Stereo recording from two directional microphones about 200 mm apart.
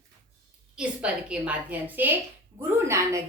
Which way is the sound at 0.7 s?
5° right (ahead or behind).